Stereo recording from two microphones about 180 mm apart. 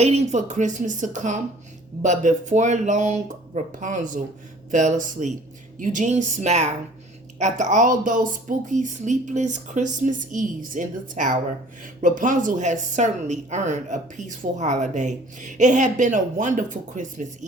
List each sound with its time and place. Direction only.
0.0 s a man's voice: 35° right (ahead or behind)